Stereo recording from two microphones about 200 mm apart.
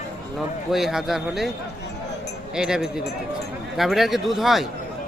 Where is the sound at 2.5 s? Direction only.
5° right (ahead or behind).